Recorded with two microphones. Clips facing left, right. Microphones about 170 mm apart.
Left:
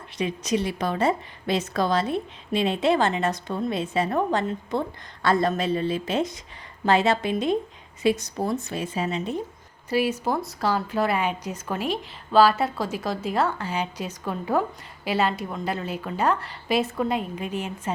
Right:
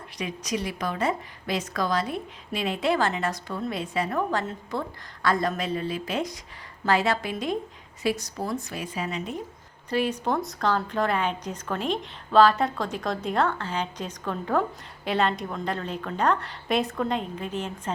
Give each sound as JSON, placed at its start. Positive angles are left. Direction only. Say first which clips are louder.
{"t": 0.2, "sound": "a woman's voice", "louder": "left 5 dB", "side_deg": 25}
{"t": 9.9, "sound": "a woman's voice", "louder": "left 2 dB", "side_deg": 5}